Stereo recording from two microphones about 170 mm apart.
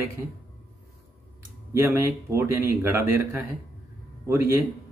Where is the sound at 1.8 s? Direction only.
15° right (ahead or behind).